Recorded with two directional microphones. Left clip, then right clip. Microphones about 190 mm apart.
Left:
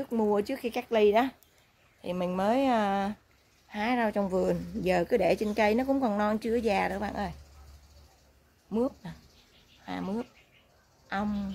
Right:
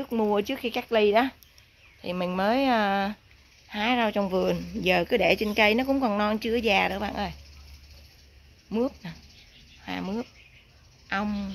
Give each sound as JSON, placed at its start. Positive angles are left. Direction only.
{"t": 0.0, "sound": "speech", "side_deg": -15}
{"t": 8.6, "sound": "speech", "side_deg": -15}